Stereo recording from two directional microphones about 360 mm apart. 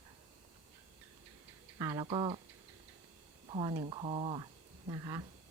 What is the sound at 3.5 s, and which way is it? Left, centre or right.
Speech, centre.